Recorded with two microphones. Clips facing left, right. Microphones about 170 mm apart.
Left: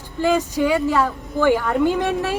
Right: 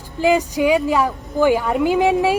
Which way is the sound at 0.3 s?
15° right (ahead or behind).